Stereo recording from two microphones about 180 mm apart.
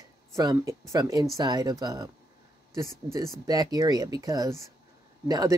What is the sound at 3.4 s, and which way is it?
Speech, 20° right (ahead or behind).